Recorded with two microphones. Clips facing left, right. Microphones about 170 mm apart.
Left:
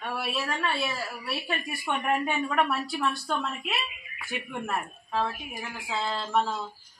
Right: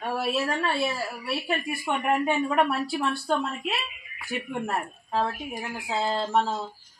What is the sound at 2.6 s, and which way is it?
Speech, 30° right (ahead or behind).